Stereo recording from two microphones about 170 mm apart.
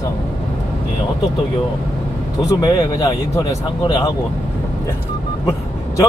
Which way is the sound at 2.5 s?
20° left (ahead or behind).